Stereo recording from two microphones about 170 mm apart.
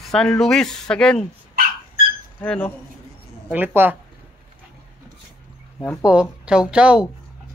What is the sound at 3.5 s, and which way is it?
Speech, 10° right (ahead or behind).